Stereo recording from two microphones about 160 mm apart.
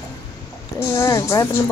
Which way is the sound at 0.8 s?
15° left (ahead or behind).